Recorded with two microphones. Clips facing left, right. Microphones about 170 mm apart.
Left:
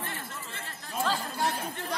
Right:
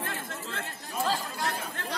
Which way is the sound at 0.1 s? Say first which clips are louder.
Right 4 dB; 90° right.